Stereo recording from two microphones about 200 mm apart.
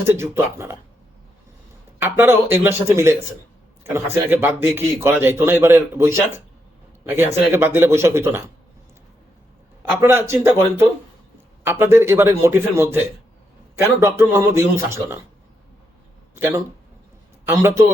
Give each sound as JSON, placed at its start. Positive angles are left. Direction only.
{"t": 0.0, "sound": "a man's voice", "side_deg": -10}
{"t": 2.0, "sound": "a man's voice", "side_deg": -10}
{"t": 7.5, "sound": "a man's voice", "side_deg": -10}
{"t": 10.0, "sound": "a man's voice", "side_deg": -15}
{"t": 16.3, "sound": "a man's voice", "side_deg": -10}